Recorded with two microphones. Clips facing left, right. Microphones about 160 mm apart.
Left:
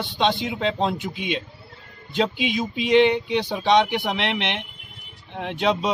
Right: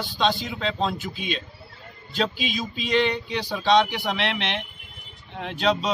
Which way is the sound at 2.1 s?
20° left (ahead or behind).